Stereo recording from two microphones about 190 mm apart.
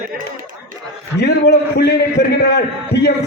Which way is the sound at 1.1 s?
60° left (ahead or behind).